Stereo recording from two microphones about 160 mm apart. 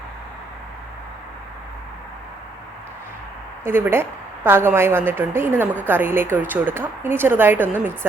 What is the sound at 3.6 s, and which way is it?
A woman's voice, 15° right (ahead or behind).